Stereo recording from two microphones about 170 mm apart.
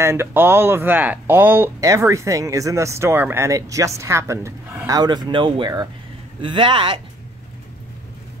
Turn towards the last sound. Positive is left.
turn(degrees=-30)  # may be behind; listen again after turning